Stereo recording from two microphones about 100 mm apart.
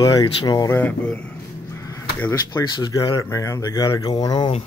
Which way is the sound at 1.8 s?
30° left (ahead or behind).